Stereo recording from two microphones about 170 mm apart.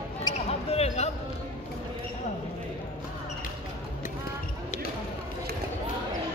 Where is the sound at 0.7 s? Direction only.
35° left (ahead or behind).